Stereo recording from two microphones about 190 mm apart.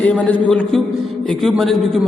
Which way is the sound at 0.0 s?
5° left (ahead or behind).